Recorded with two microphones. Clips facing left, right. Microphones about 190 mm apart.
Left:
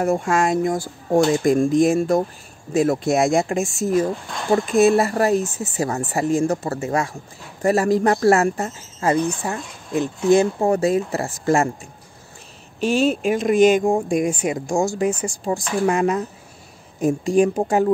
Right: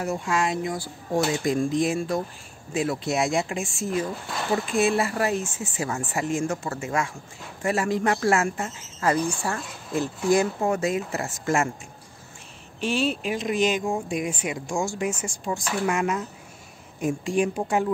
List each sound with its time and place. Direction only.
0.0 s speech: 50° left (ahead or behind)
9.0 s speech: 20° left (ahead or behind)
12.8 s speech: 45° left (ahead or behind)